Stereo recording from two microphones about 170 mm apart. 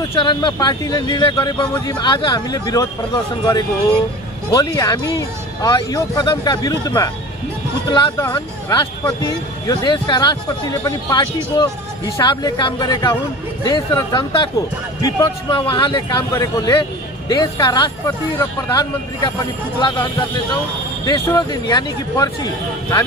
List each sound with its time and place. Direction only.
0.1 s speech: 25° left (ahead or behind)
8.2 s speech: 20° left (ahead or behind)
21.0 s speech: 20° left (ahead or behind)